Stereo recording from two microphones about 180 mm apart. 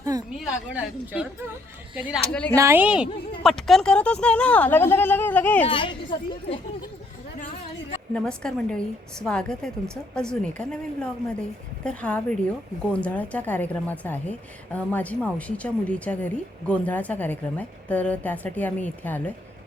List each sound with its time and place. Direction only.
0.0 s a sound: 20° right (ahead or behind)
0.7 s a woman's voice: 5° right (ahead or behind)
2.3 s speech: 5° left (ahead or behind)
2.6 s a woman's voice: 10° right (ahead or behind); by 5.6 s 10° left (ahead or behind)
5.6 s speech: 25° left (ahead or behind)
8.1 s speech: 5° left (ahead or behind)